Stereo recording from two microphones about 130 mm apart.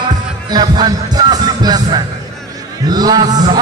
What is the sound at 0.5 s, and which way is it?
A man's voice, 30° right (ahead or behind).